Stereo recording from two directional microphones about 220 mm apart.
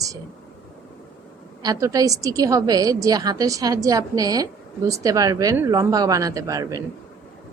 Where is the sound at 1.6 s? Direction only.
15° right (ahead or behind).